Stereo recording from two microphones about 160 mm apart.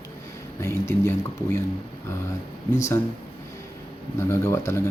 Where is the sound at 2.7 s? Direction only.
15° left (ahead or behind).